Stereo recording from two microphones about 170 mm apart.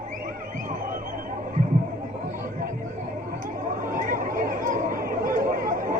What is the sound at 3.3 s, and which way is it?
Chatter, 50° right (ahead or behind).